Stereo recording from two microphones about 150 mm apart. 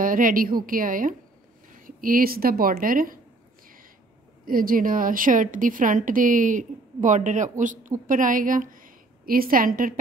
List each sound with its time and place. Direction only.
0.0 s a woman's voice: 65° right (ahead or behind)
4.5 s a woman's voice: 70° right (ahead or behind)